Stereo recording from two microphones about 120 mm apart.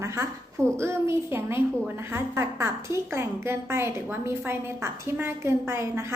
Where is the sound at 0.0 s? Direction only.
25° right (ahead or behind).